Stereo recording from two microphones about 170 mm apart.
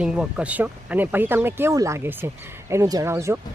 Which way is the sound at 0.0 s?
5° right (ahead or behind).